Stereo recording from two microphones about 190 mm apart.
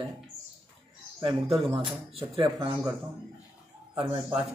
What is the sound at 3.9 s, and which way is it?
Speech, 25° right (ahead or behind).